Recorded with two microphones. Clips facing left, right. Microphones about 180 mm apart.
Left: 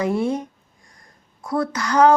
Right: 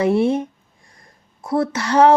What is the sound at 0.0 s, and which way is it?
Speech, 25° right (ahead or behind).